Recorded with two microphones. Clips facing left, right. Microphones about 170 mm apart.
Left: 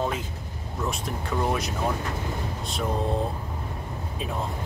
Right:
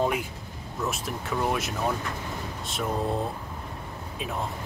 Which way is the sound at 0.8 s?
5° right (ahead or behind).